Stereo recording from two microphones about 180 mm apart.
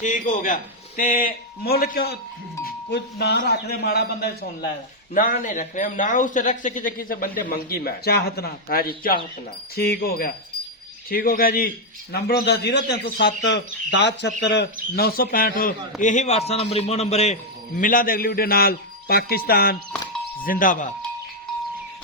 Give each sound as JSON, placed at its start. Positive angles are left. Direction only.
{"t": 0.0, "sound": "a man's voice", "side_deg": 45}
{"t": 5.1, "sound": "a man's voice", "side_deg": 50}
{"t": 14.9, "sound": "a man's voice", "side_deg": 55}
{"t": 17.7, "sound": "a man's voice", "side_deg": 50}